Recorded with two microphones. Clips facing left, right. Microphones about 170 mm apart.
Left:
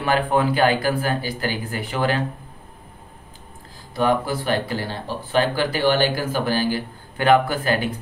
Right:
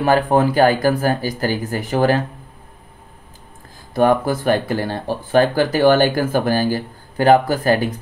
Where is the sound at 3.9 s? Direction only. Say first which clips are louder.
Right 5 dB; 50° right (ahead or behind).